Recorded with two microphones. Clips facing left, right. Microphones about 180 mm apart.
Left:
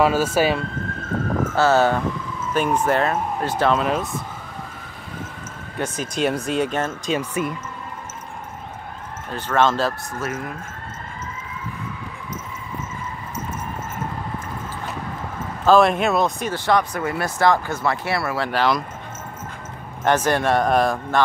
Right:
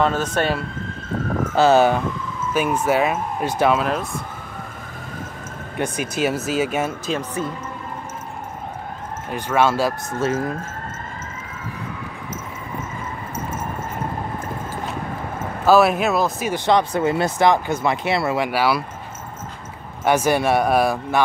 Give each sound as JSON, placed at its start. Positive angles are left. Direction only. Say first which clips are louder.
{"t": 0.0, "sound": "speech", "louder": "left 2 dB", "side_deg": 5}
{"t": 1.5, "sound": "speech", "louder": "right 3 dB", "side_deg": -15}
{"t": 3.8, "sound": "speech", "louder": "left 1 dB", "side_deg": 0}
{"t": 5.8, "sound": "speech", "louder": "right 1 dB", "side_deg": -10}
{"t": 7.2, "sound": "speech", "louder": "left 1 dB", "side_deg": 10}
{"t": 9.3, "sound": "speech", "louder": "right 1 dB", "side_deg": -10}
{"t": 10.1, "sound": "speech", "louder": "right 6 dB", "side_deg": -30}
{"t": 15.6, "sound": "speech", "louder": "even", "side_deg": -5}
{"t": 16.5, "sound": "speech", "louder": "right 4 dB", "side_deg": -20}
{"t": 18.5, "sound": "speech", "louder": "right 1 dB", "side_deg": -10}
{"t": 20.1, "sound": "speech", "louder": "right 1 dB", "side_deg": -10}